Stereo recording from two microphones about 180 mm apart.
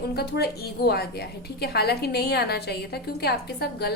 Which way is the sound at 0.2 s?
65° left (ahead or behind).